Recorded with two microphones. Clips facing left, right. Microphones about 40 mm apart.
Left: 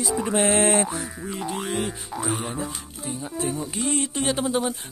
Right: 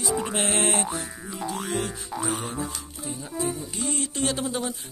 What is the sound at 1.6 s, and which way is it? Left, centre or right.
Boing, centre.